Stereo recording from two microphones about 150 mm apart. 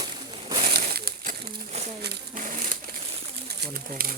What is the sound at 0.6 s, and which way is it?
Pigeon, 75° right (ahead or behind).